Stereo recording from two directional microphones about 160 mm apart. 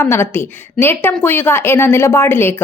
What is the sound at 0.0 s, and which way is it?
A woman's voice, 15° left (ahead or behind).